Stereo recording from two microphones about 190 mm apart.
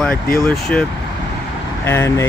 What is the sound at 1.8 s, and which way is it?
Speech, 15° left (ahead or behind).